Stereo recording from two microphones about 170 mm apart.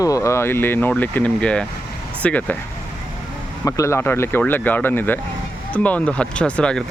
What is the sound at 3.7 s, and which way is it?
Speech, 15° left (ahead or behind).